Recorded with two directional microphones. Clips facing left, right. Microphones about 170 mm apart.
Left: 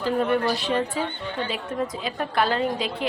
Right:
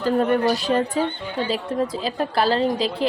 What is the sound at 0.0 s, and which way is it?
A woman's voice, 40° right (ahead or behind).